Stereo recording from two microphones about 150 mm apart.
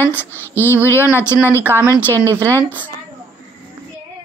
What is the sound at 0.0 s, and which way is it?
Speech, 15° left (ahead or behind).